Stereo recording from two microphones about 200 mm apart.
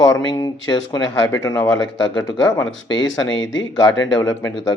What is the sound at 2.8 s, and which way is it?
Speech, 70° left (ahead or behind).